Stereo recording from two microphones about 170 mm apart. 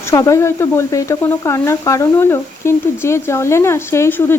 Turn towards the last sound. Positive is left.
turn(degrees=15)  # may be behind; listen again after turning